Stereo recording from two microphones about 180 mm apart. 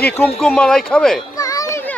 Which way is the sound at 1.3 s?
20° left (ahead or behind).